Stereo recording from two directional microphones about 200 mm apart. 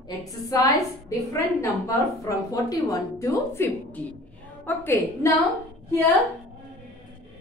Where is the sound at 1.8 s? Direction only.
15° left (ahead or behind).